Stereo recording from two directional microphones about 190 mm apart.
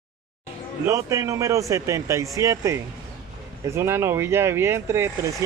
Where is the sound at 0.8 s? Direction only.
15° right (ahead or behind).